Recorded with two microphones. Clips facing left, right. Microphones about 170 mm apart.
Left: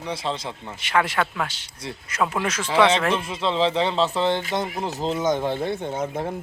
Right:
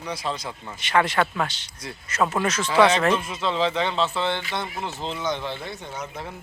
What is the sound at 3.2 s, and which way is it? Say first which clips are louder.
A man's voice: left 2 dB; 30° left (ahead or behind).